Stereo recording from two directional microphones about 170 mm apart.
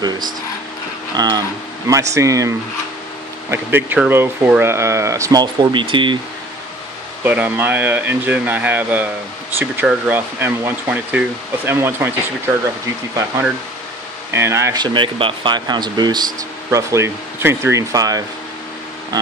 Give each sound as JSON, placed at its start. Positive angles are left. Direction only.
{"t": 0.0, "sound": "speech", "side_deg": -25}
{"t": 7.2, "sound": "speech", "side_deg": -10}
{"t": 14.3, "sound": "speech", "side_deg": -15}